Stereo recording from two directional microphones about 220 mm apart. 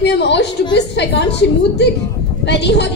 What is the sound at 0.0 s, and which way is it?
A woman's voice, 50° left (ahead or behind).